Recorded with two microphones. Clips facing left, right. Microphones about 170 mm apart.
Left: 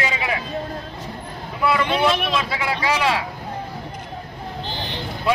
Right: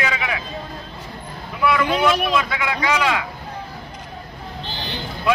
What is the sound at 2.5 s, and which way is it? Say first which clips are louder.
Speech: even; 30° left (ahead or behind).